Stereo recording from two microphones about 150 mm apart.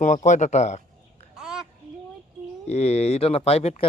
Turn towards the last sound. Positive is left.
turn(degrees=45)  # may be behind; listen again after turning